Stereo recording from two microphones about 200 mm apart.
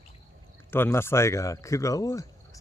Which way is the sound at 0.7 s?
10° left (ahead or behind).